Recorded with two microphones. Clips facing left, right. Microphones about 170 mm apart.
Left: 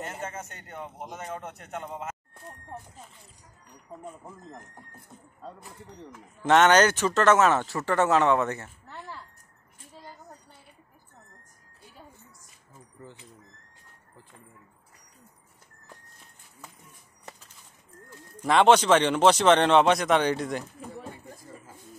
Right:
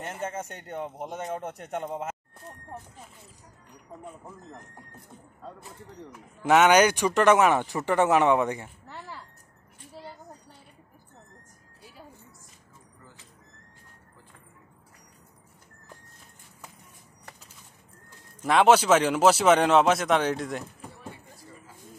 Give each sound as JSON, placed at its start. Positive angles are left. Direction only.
{"t": 1.0, "sound": "a man's voice", "side_deg": -30}
{"t": 6.4, "sound": "speech", "side_deg": -10}
{"t": 18.4, "sound": "a man's voice", "side_deg": -5}